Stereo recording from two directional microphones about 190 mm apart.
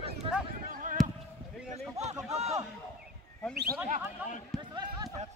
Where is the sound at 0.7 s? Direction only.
45° right (ahead or behind).